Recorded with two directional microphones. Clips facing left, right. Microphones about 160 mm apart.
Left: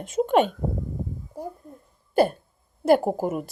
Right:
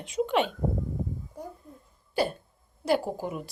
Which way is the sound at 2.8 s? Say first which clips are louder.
Left 7 dB; 50° left (ahead or behind).